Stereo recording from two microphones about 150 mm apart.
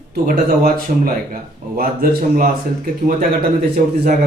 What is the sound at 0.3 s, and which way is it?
Speech, 70° right (ahead or behind).